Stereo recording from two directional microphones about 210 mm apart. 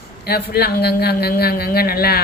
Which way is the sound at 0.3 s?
50° left (ahead or behind).